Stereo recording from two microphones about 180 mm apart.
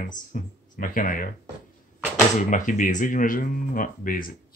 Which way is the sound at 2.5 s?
45° left (ahead or behind).